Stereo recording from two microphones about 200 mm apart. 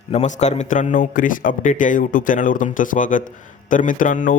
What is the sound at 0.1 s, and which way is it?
Speech, 35° left (ahead or behind).